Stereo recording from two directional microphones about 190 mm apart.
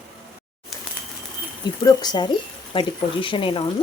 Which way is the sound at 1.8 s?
20° left (ahead or behind).